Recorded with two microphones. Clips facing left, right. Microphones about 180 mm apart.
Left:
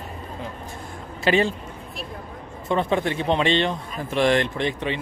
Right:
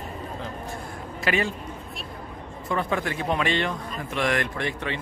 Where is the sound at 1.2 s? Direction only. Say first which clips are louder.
Left 6 dB; 30° left (ahead or behind).